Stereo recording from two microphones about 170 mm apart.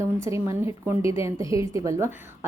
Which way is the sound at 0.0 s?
15° right (ahead or behind).